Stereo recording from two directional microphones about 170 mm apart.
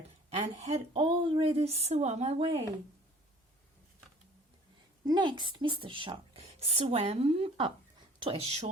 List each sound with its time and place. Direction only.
0.3 s a woman's voice: 40° right (ahead or behind)
5.0 s a woman's voice: 25° right (ahead or behind)